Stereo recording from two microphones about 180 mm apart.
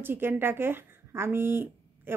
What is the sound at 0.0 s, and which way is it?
Speech, 10° right (ahead or behind).